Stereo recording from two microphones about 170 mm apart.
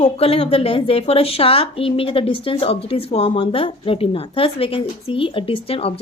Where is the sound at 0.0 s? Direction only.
35° left (ahead or behind).